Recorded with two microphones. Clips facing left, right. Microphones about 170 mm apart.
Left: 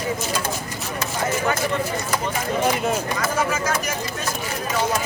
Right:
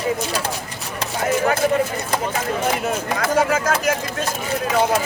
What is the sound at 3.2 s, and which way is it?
Speech, 60° right (ahead or behind).